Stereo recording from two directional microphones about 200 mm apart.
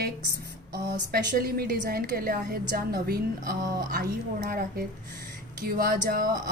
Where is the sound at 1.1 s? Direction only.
50° right (ahead or behind).